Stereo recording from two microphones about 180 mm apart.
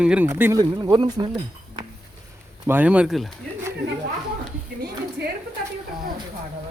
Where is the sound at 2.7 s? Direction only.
10° right (ahead or behind).